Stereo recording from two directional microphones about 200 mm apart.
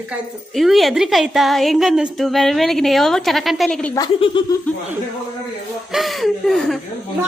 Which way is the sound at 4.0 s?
25° left (ahead or behind).